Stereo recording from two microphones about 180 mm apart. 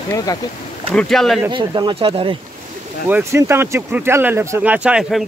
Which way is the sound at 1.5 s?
25° right (ahead or behind).